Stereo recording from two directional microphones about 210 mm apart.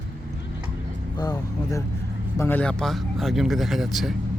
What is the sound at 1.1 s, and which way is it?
Speech, 20° left (ahead or behind).